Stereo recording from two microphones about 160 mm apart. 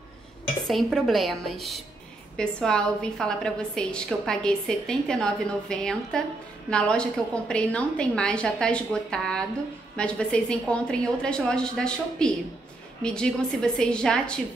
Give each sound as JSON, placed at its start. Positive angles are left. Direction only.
{"t": 0.7, "sound": "a woman's voice", "side_deg": 0}